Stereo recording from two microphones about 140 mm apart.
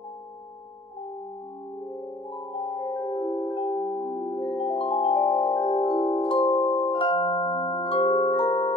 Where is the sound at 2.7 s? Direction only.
30° left (ahead or behind).